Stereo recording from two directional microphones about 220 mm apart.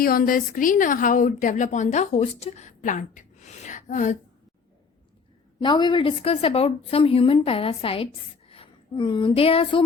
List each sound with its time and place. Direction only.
0.0 s a woman's voice: 40° left (ahead or behind)
5.6 s a woman's voice: 20° left (ahead or behind)